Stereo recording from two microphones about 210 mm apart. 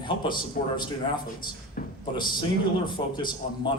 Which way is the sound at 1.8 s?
40° left (ahead or behind).